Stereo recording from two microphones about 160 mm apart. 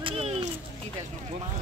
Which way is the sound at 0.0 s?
40° right (ahead or behind).